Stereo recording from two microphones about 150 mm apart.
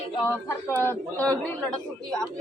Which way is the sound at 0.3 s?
15° left (ahead or behind).